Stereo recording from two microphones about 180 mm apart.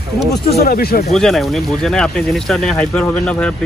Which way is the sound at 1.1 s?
Centre (ahead or behind).